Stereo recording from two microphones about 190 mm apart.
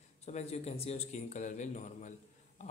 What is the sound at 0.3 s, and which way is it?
Speech, 35° left (ahead or behind).